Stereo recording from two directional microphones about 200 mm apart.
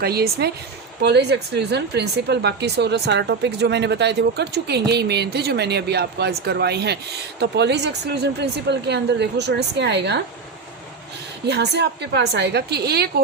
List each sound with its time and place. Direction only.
0.0 s speech: 50° right (ahead or behind)
11.4 s speech: 55° right (ahead or behind)